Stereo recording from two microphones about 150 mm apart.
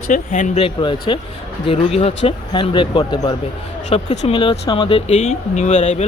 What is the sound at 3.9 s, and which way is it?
Speech, 50° left (ahead or behind).